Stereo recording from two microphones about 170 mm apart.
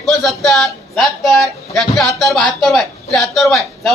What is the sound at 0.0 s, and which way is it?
Speech, centre (ahead or behind).